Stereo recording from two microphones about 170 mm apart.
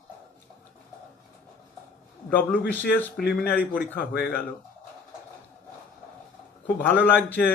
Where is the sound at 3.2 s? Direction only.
70° left (ahead or behind).